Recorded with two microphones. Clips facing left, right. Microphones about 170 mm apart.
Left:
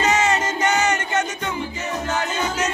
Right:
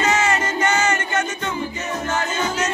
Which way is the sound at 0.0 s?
20° left (ahead or behind).